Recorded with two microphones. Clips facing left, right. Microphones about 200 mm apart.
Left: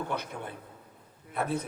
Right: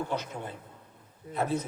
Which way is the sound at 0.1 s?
55° left (ahead or behind).